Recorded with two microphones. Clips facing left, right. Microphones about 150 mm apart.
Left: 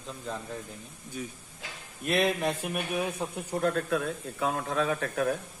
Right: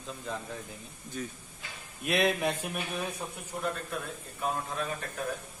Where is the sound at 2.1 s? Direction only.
Centre (ahead or behind).